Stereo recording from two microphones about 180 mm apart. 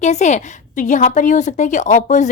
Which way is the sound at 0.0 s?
40° left (ahead or behind).